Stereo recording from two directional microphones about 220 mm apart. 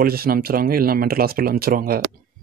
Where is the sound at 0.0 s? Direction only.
45° right (ahead or behind).